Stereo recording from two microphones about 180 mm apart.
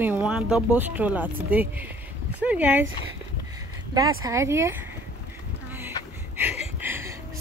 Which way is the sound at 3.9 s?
20° right (ahead or behind).